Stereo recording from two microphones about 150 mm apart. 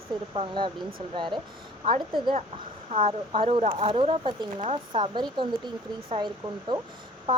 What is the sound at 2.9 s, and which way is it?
Speech, 40° right (ahead or behind).